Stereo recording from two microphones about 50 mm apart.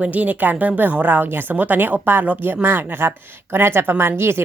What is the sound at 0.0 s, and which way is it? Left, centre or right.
Speech, right.